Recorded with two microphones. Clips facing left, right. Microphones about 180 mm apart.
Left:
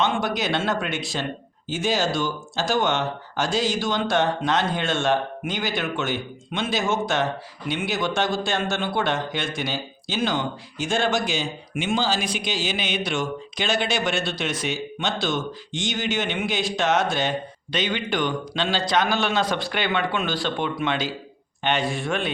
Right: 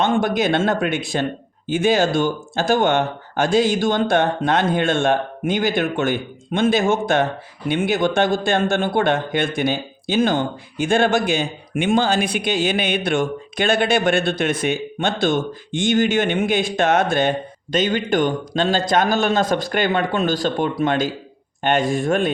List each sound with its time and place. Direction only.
0.0 s speech: 50° right (ahead or behind)